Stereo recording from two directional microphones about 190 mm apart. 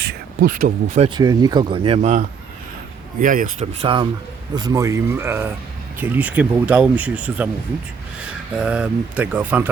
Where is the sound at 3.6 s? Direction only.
30° right (ahead or behind).